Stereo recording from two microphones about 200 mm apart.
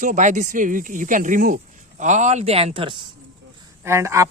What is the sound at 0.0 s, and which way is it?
Speech, 40° right (ahead or behind).